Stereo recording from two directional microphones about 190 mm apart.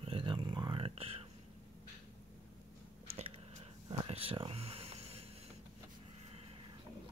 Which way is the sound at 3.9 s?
30° right (ahead or behind).